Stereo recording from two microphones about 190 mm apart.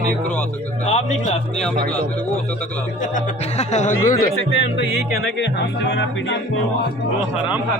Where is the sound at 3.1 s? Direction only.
40° left (ahead or behind).